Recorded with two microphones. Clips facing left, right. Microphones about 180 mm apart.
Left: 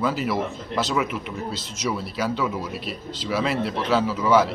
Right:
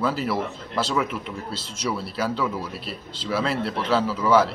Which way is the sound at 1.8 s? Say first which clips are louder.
Left 1 dB; 30° right (ahead or behind).